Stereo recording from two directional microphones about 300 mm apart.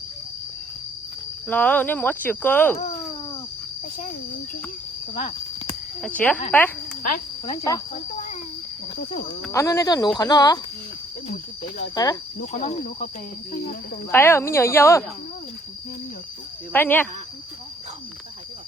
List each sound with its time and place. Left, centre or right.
1.5 s speech: centre
5.1 s cricket: left
6.0 s speech: centre
7.0 s speech: left
9.4 s speech: centre
11.8 s speech: centre
12.4 s speech: left
14.1 s speech: centre
16.7 s speech: centre